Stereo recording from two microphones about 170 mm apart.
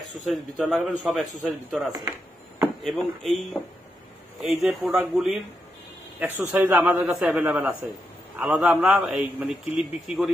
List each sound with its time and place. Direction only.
0.3 s a man's voice: centre (ahead or behind)
1.9 s speech: 20° right (ahead or behind)
2.6 s speech: centre (ahead or behind)
4.4 s a man's voice: centre (ahead or behind)